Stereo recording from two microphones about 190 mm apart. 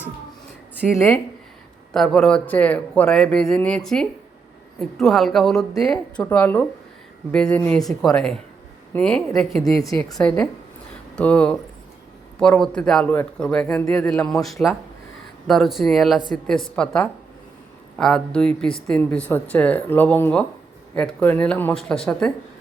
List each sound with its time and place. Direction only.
0.9 s speech: 10° left (ahead or behind)
9.8 s speech: 20° left (ahead or behind)
10.2 s speech: 5° left (ahead or behind)